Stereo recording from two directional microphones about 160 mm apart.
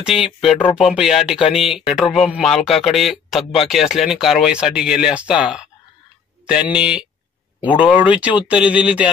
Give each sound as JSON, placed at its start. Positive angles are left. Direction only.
{"t": 0.7, "sound": "speech", "side_deg": 35}
{"t": 0.9, "sound": "speech", "side_deg": -5}